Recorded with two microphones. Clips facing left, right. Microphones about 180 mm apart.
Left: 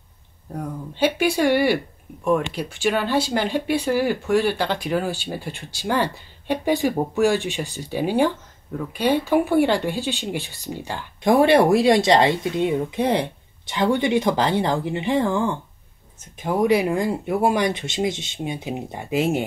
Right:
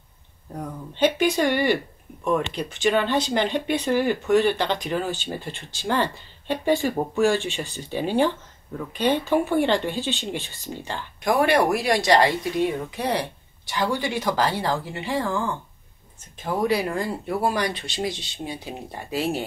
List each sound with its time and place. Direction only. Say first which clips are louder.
0.5 s speech: left 3 dB; 10° left (ahead or behind)
11.2 s speech: left 5 dB; 25° left (ahead or behind)